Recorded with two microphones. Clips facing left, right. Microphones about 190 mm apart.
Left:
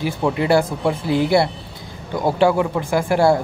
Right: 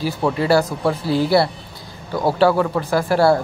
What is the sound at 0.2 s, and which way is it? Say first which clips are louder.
Speech: even; 20° left (ahead or behind).